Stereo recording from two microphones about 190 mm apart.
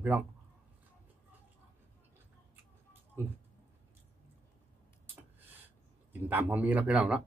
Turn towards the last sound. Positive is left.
turn(degrees=-5)  # may be behind; listen again after turning